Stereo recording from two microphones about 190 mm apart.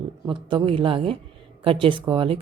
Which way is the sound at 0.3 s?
25° right (ahead or behind).